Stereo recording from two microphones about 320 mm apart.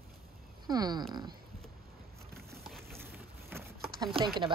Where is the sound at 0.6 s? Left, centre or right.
Centre.